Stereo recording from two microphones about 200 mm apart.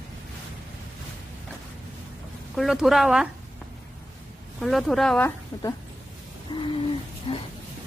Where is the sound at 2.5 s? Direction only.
Centre (ahead or behind).